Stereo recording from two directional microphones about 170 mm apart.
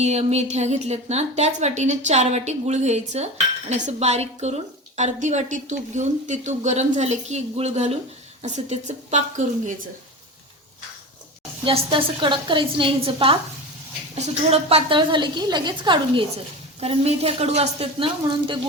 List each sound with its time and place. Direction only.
0.0 s a woman's voice: 40° right (ahead or behind)
11.6 s a woman's voice: 30° right (ahead or behind)